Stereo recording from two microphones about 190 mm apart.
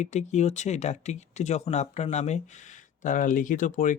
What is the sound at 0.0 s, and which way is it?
Speech, 40° left (ahead or behind).